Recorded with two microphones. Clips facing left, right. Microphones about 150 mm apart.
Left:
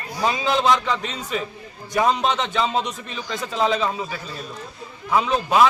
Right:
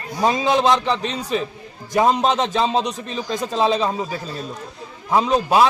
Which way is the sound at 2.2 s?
40° right (ahead or behind).